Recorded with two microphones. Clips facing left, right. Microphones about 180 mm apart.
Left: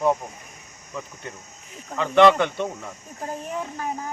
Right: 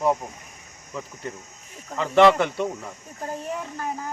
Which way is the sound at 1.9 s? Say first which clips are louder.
Even; 5° right (ahead or behind).